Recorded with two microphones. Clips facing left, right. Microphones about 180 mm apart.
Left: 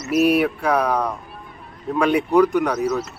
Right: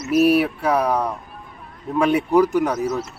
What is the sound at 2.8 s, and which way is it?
Speech, 25° right (ahead or behind).